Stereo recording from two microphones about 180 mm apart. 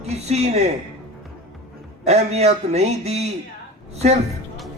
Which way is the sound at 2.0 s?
35° right (ahead or behind).